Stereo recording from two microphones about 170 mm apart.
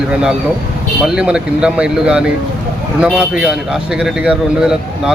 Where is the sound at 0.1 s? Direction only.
5° right (ahead or behind).